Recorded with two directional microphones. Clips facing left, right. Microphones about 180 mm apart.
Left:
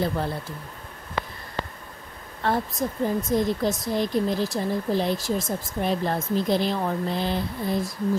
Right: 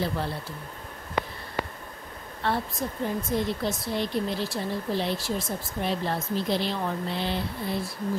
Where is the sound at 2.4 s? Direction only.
45° left (ahead or behind).